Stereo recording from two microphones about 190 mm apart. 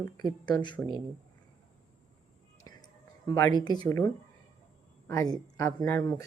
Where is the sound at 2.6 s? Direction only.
20° left (ahead or behind).